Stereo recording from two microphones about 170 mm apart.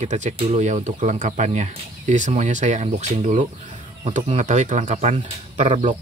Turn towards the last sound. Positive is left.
turn(degrees=-40)  # may be behind; listen again after turning